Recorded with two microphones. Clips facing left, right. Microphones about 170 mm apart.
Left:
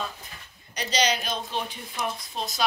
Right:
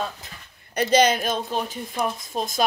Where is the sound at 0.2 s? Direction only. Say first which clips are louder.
Right 2 dB; 90° right.